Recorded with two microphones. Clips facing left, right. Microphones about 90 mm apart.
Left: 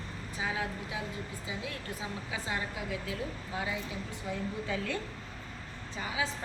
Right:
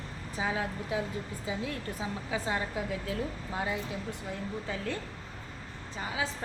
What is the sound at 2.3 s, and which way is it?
Speech, 40° right (ahead or behind).